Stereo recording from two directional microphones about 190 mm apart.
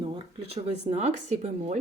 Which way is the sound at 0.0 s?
30° right (ahead or behind).